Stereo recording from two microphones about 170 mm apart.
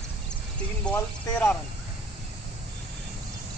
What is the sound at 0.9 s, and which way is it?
Speech, 10° left (ahead or behind).